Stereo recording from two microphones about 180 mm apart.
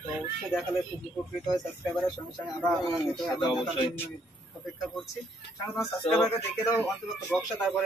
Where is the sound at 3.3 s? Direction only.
25° left (ahead or behind).